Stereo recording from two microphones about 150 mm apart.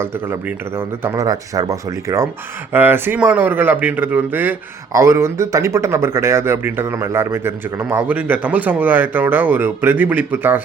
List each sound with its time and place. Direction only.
0.0 s speech: 15° right (ahead or behind)